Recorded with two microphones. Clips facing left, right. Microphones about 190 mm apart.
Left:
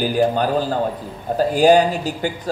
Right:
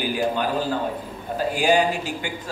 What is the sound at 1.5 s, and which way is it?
Speech, 40° left (ahead or behind).